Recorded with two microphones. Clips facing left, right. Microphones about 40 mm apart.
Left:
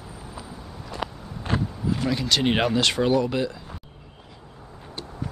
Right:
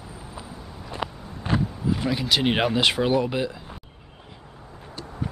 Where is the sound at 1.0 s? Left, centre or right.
Centre.